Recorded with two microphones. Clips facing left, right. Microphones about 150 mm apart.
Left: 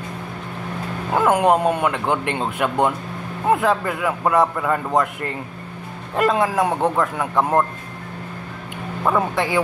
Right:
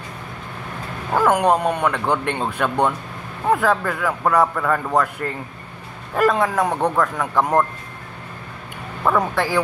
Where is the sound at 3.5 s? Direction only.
20° left (ahead or behind).